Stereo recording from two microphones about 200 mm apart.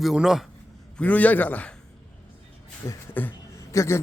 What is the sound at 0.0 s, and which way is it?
A man's voice, centre (ahead or behind).